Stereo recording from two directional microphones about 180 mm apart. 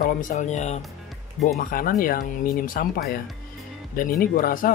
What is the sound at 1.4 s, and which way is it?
Speech, 55° left (ahead or behind).